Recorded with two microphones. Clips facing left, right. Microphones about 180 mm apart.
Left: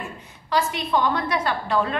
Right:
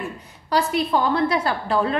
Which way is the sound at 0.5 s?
35° right (ahead or behind).